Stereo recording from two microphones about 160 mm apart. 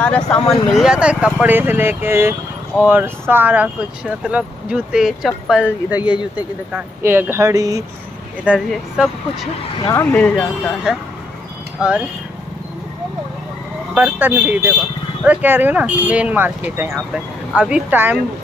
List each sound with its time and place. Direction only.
0.0 s speech: 5° left (ahead or behind)
0.5 s speech: 5° right (ahead or behind); by 7.8 s 20° right (ahead or behind)
8.5 s speech: 5° right (ahead or behind)
9.9 s speech: 10° left (ahead or behind); by 11.9 s 5° right (ahead or behind)
13.9 s speech: 10° right (ahead or behind)